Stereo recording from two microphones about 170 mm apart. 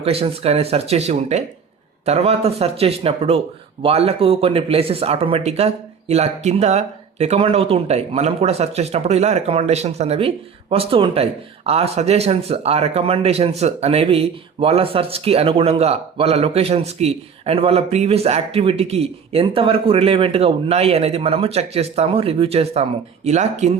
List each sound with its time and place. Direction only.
0.0 s speech: 35° right (ahead or behind)